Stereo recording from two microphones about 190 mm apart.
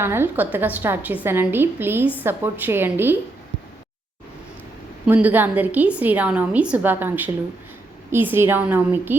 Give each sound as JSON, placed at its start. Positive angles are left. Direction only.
{"t": 0.0, "sound": "a woman's voice", "side_deg": -10}
{"t": 5.0, "sound": "a woman's voice", "side_deg": -10}